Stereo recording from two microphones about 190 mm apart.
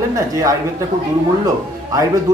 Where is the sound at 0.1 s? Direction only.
15° right (ahead or behind).